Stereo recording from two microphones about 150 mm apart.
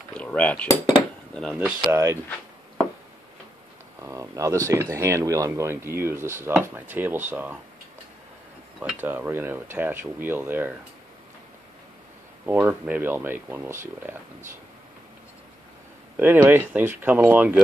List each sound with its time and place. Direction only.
0.1 s cutlery: 10° left (ahead or behind)
1.3 s speech: 5° left (ahead or behind)
1.9 s speech: 15° right (ahead or behind)
4.0 s speech: 20° right (ahead or behind)
9.0 s speech: 10° right (ahead or behind)
12.4 s speech: 10° right (ahead or behind)
16.2 s speech: 10° right (ahead or behind)